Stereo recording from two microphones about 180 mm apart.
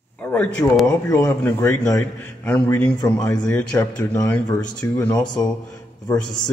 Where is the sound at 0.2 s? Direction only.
10° left (ahead or behind).